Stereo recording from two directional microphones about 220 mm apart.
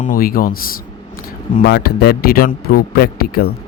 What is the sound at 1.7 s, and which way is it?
Speech, 45° left (ahead or behind).